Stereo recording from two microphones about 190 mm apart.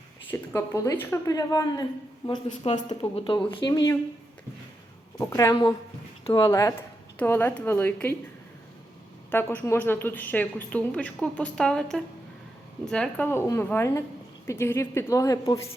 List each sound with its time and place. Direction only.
0.3 s speech: 15° left (ahead or behind)
5.1 s speech: 10° left (ahead or behind)
9.3 s speech: 10° left (ahead or behind)